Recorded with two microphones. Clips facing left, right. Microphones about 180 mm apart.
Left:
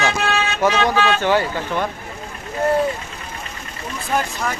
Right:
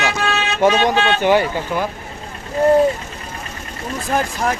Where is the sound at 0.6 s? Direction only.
20° right (ahead or behind).